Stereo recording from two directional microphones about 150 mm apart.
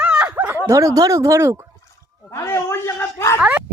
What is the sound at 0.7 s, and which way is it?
Speech, 20° right (ahead or behind).